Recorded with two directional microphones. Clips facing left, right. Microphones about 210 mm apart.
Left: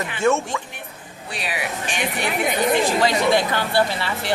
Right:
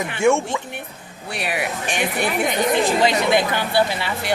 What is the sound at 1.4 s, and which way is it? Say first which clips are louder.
Speech: right 3 dB; 55° right (ahead or behind).